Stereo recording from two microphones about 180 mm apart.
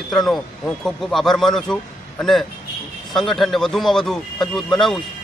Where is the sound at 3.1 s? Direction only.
Centre (ahead or behind).